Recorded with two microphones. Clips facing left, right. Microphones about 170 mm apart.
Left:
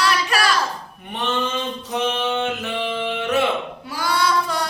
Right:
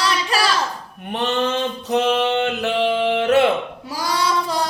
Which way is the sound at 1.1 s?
70° right (ahead or behind).